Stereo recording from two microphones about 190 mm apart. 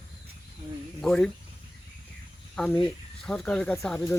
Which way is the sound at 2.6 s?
5° left (ahead or behind).